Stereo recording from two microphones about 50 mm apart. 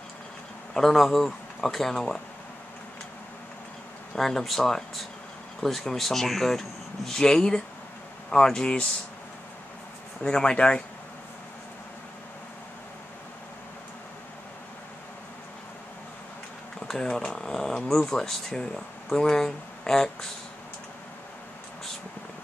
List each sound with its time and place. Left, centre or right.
0.7 s speech: centre
4.1 s speech: centre
10.2 s speech: centre
16.8 s a sound: centre
17.2 s speech: centre